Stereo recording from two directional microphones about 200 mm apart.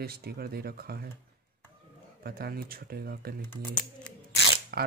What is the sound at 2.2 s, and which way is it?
Speech, 50° right (ahead or behind).